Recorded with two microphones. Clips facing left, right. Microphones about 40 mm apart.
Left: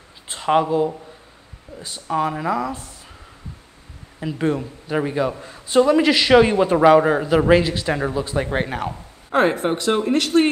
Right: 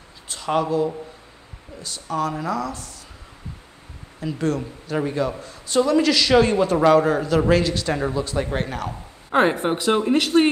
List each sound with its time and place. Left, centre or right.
0.3 s a man's voice: left
4.2 s a man's voice: left
9.3 s speech: centre